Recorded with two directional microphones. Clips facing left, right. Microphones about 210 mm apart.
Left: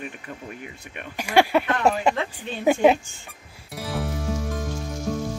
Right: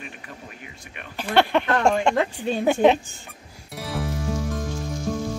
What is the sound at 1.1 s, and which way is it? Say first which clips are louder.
A woman's voice: left 1 dB; 10° left (ahead or behind).